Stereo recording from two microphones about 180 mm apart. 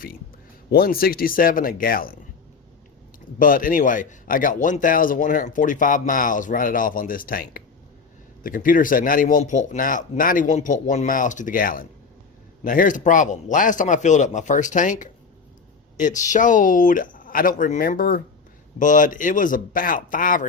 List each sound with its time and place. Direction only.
0.7 s speech: 55° left (ahead or behind)
3.3 s speech: 50° left (ahead or behind)